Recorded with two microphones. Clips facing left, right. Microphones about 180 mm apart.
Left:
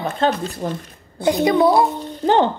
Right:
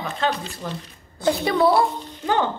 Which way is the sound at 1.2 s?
20° left (ahead or behind).